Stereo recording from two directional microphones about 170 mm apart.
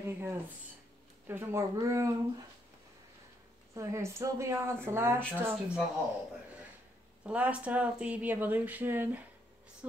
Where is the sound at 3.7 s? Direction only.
15° right (ahead or behind).